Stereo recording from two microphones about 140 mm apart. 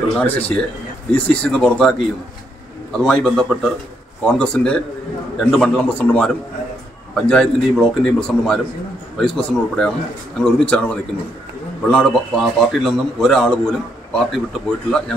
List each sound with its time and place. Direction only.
0.1 s a man's voice: 10° left (ahead or behind)
3.0 s a man's voice: 5° left (ahead or behind)